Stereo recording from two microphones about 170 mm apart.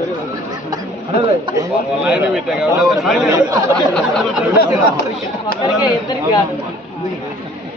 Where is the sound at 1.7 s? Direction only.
5° right (ahead or behind).